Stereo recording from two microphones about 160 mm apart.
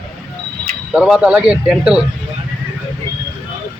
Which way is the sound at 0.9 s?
5° right (ahead or behind).